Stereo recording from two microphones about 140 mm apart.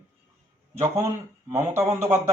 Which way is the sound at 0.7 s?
20° right (ahead or behind).